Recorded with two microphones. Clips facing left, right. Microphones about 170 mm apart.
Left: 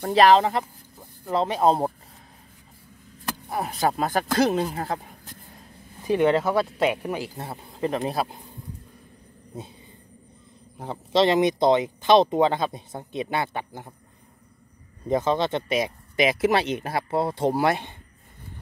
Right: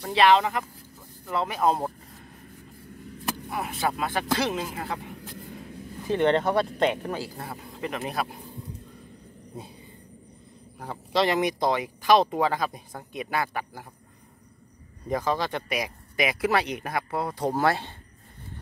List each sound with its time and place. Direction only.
0.0 s speech: 40° left (ahead or behind)
3.4 s speech: 35° left (ahead or behind)
6.0 s speech: 10° left (ahead or behind)
7.3 s speech: 30° left (ahead or behind)
10.8 s speech: 25° left (ahead or behind)
15.0 s speech: 25° left (ahead or behind)
17.5 s speech: 15° left (ahead or behind)